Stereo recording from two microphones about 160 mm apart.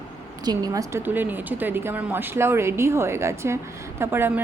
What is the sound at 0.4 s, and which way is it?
A woman's voice, 25° right (ahead or behind).